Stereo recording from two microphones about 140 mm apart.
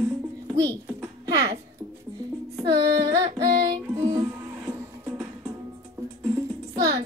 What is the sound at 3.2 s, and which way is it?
Music, 25° right (ahead or behind).